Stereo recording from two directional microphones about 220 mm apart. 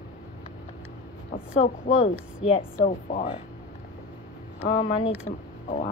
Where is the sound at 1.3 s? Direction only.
25° left (ahead or behind).